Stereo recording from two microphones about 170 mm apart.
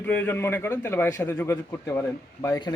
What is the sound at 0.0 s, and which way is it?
A man's voice, 10° left (ahead or behind).